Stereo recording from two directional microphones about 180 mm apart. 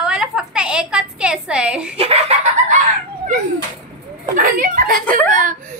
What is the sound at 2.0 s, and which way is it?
Chicken, 35° right (ahead or behind).